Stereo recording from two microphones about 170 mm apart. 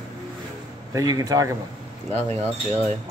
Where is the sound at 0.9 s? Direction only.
20° right (ahead or behind).